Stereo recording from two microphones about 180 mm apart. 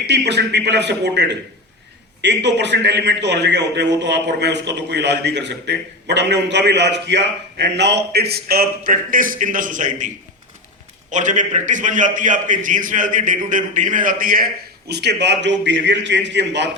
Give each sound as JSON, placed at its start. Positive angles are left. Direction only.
{"t": 0.1, "sound": "a man's voice", "side_deg": -70}
{"t": 11.1, "sound": "a man's voice", "side_deg": -45}
{"t": 14.8, "sound": "a man's voice", "side_deg": -70}